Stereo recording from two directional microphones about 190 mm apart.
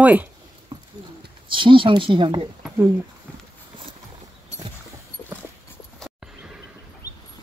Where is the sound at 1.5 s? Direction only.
25° right (ahead or behind).